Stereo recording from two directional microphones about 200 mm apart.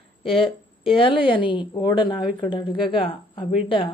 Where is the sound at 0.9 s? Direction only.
25° left (ahead or behind).